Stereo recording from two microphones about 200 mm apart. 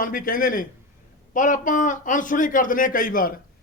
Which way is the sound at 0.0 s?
45° left (ahead or behind).